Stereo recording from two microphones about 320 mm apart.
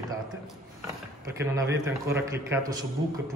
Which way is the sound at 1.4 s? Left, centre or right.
Centre.